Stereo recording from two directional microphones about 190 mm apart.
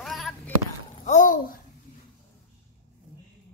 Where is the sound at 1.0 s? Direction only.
40° left (ahead or behind).